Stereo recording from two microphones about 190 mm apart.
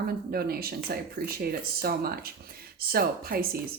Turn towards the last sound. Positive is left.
turn(degrees=-50)  # may be behind; listen again after turning